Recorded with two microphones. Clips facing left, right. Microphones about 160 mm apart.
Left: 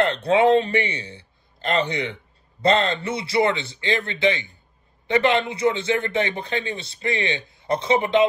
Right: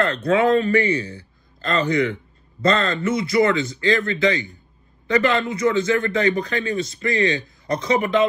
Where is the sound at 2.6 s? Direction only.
30° left (ahead or behind).